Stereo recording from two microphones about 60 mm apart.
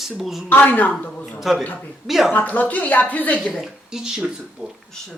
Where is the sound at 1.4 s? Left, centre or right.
Centre.